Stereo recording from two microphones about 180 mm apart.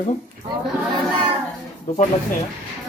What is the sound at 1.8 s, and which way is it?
Speech, 35° left (ahead or behind).